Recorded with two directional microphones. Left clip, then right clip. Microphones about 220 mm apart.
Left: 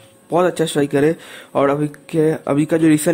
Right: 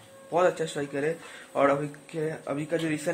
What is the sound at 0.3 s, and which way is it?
Speech, 45° left (ahead or behind).